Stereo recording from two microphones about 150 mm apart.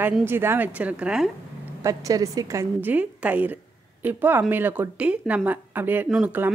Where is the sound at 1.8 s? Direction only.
20° right (ahead or behind).